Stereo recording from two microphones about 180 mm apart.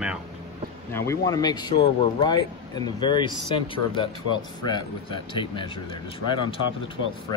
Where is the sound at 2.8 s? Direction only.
25° left (ahead or behind).